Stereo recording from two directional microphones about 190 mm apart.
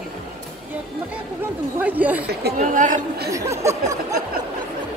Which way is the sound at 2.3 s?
50° right (ahead or behind).